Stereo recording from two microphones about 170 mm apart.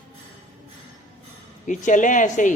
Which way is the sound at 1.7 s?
50° left (ahead or behind).